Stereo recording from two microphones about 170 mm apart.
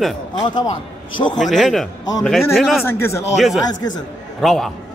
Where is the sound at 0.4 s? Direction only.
25° left (ahead or behind).